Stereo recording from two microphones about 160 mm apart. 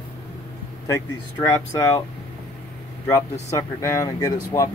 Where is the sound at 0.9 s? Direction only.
25° left (ahead or behind).